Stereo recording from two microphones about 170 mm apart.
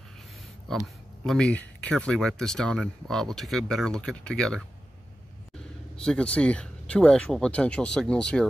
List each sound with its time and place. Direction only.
0.7 s speech: centre (ahead or behind)
5.9 s speech: 5° left (ahead or behind)